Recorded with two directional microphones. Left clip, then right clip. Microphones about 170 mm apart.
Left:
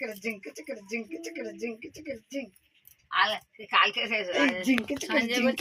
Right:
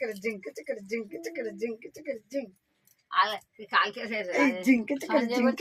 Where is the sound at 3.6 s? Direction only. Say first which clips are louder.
Left 3 dB; 15° right (ahead or behind).